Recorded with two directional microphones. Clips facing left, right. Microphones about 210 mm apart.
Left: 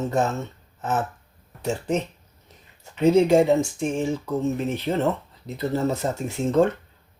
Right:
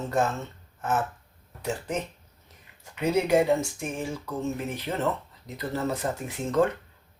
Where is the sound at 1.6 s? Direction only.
25° left (ahead or behind).